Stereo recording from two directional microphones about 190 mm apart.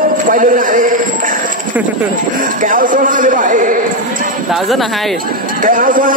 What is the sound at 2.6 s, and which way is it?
A man's voice, 45° right (ahead or behind).